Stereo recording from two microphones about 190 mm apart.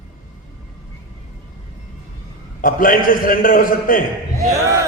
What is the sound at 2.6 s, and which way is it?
A man's voice, 45° left (ahead or behind).